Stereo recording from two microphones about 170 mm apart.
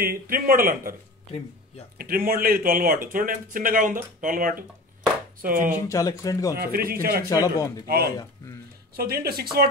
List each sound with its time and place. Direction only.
0.0 s speech: 55° right (ahead or behind)
2.0 s speech: 60° right (ahead or behind)
5.9 s speech: 20° left (ahead or behind)
6.5 s speech: 60° right (ahead or behind)
7.2 s speech: 20° left (ahead or behind)
7.8 s speech: 65° right (ahead or behind)